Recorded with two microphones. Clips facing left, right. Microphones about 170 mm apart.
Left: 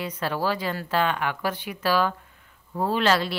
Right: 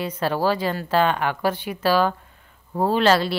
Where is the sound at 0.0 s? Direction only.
30° right (ahead or behind).